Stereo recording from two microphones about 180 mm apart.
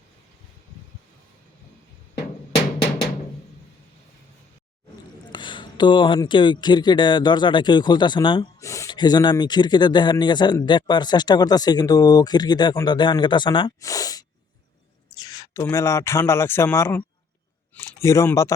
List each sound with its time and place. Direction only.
5.3 s speech: 25° left (ahead or behind)
15.1 s a sound: 20° left (ahead or behind)
15.6 s speech: 15° left (ahead or behind)